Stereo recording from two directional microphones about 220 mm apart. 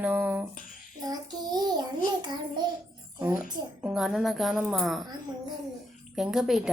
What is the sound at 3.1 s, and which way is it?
A child's voice, 5° right (ahead or behind).